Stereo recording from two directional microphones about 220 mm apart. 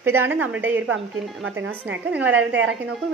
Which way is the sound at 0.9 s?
60° right (ahead or behind).